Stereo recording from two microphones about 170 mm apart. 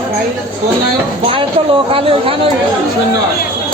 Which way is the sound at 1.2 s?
30° right (ahead or behind).